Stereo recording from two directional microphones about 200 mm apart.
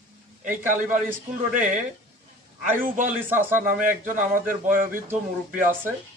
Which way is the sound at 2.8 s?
45° right (ahead or behind).